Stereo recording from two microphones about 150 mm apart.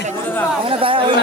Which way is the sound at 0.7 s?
35° right (ahead or behind).